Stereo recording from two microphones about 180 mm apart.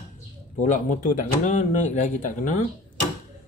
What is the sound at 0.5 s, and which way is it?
Speech, 45° left (ahead or behind).